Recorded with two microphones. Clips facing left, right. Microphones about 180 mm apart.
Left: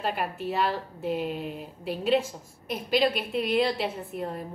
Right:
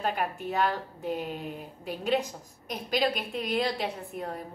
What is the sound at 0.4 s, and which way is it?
A woman's voice, 45° right (ahead or behind).